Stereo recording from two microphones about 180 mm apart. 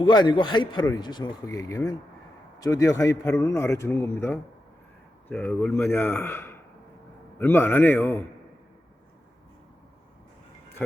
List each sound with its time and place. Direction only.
0.0 s a man's voice: 25° left (ahead or behind)
5.3 s a man's voice: centre (ahead or behind)